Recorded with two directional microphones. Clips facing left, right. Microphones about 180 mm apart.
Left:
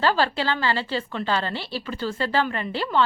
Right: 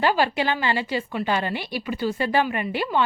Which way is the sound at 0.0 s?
15° right (ahead or behind).